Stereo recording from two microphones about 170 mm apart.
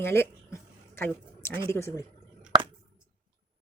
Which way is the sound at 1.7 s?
15° left (ahead or behind).